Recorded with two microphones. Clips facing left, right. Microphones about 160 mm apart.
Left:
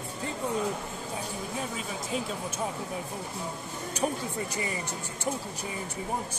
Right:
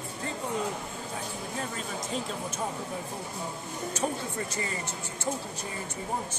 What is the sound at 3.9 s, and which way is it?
Speech, 15° left (ahead or behind).